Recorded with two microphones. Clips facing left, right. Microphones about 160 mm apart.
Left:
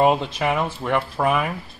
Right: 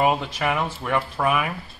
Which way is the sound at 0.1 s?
20° left (ahead or behind).